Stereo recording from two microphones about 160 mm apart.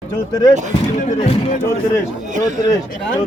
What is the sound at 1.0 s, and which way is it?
Speech, 45° left (ahead or behind).